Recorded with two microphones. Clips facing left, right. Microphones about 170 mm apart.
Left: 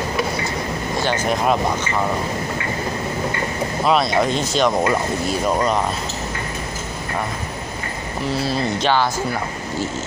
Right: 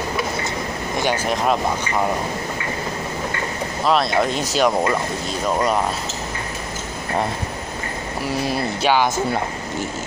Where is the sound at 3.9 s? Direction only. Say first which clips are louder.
Left 1 dB; centre (ahead or behind).